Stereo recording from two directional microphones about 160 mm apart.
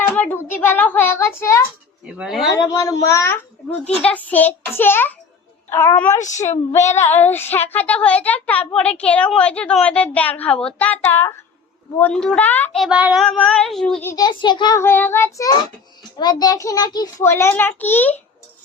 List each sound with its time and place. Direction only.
0.1 s a woman's voice: 10° left (ahead or behind)
2.0 s speech: 5° right (ahead or behind)
2.6 s a child's voice: 20° left (ahead or behind)
12.8 s child singing: 5° right (ahead or behind)
13.2 s a woman's voice: 5° left (ahead or behind)
14.0 s a child's voice: 20° left (ahead or behind)
14.8 s a woman's voice: 15° left (ahead or behind)